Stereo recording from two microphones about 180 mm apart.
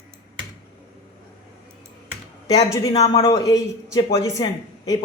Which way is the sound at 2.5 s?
20° left (ahead or behind).